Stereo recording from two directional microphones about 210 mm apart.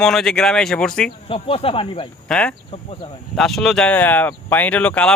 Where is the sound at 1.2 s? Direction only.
25° left (ahead or behind).